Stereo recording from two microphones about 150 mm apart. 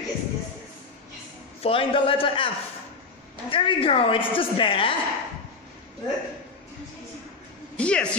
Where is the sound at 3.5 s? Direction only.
35° left (ahead or behind).